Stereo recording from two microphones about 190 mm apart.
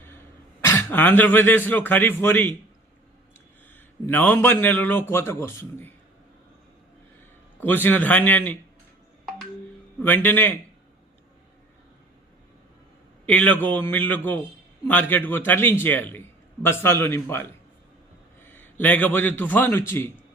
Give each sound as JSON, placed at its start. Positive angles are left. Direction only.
{"t": 0.6, "sound": "speech", "side_deg": 10}
{"t": 3.7, "sound": "speech", "side_deg": 10}
{"t": 7.6, "sound": "speech", "side_deg": 10}
{"t": 10.0, "sound": "speech", "side_deg": 10}
{"t": 13.2, "sound": "a man's voice", "side_deg": 5}